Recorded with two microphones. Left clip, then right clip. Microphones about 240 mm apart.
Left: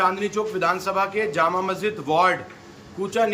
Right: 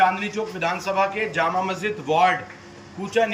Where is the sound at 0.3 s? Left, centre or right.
Centre.